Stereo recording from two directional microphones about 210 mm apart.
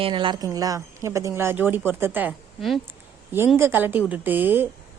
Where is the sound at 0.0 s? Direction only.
25° right (ahead or behind).